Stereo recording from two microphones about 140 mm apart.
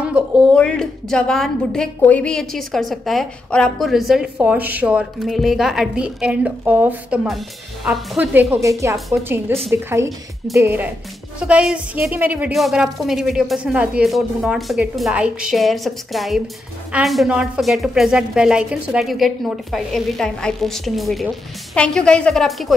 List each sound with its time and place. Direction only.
0.5 s a woman's voice: 5° left (ahead or behind)
4.4 s a woman's voice: 10° right (ahead or behind)
8.6 s a woman's voice: 20° right (ahead or behind)
11.3 s a woman's voice: 5° right (ahead or behind)